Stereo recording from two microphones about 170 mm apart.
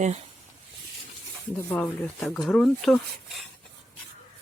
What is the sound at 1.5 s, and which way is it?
Speech, 10° left (ahead or behind).